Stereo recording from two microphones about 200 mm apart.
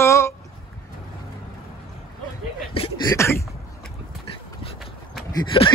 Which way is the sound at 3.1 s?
15° left (ahead or behind).